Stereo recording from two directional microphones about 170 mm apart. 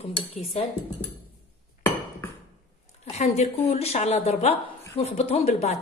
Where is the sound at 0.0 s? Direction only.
35° left (ahead or behind).